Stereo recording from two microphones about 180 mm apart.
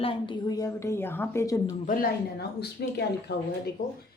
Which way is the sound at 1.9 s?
60° left (ahead or behind).